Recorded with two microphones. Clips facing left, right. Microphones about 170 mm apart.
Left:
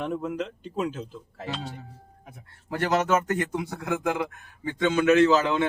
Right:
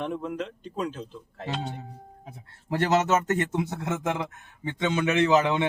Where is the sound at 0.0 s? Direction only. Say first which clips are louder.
Left 1 dB; 5° left (ahead or behind).